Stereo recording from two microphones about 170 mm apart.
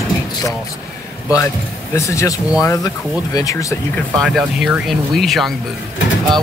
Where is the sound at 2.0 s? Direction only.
20° left (ahead or behind).